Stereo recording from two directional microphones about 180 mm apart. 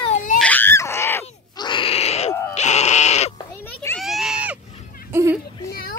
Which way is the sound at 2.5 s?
40° left (ahead or behind).